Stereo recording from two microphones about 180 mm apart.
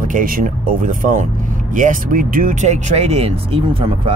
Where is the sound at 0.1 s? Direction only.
50° right (ahead or behind).